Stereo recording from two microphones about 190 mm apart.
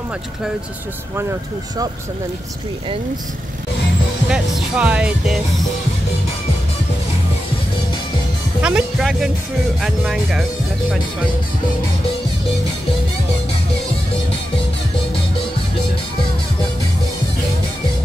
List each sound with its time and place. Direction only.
4.3 s speech: 5° right (ahead or behind)
8.5 s speech: 5° right (ahead or behind)